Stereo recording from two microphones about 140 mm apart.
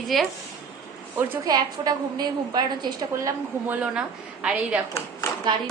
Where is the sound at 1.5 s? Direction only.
30° right (ahead or behind).